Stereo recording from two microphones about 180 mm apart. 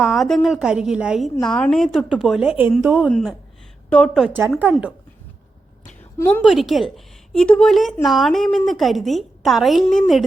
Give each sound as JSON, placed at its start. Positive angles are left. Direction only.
{"t": 0.0, "sound": "a woman's voice", "side_deg": 0}
{"t": 3.1, "sound": "a woman's voice", "side_deg": 5}
{"t": 4.3, "sound": "speech", "side_deg": -10}
{"t": 6.1, "sound": "a woman's voice", "side_deg": 10}
{"t": 6.4, "sound": "a woman's voice", "side_deg": 0}